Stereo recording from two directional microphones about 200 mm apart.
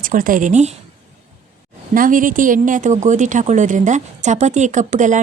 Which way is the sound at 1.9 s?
45° right (ahead or behind).